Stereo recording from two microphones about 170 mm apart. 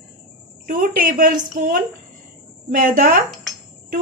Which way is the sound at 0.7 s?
60° right (ahead or behind).